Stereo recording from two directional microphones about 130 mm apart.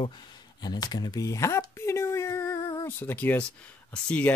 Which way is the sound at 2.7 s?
20° left (ahead or behind).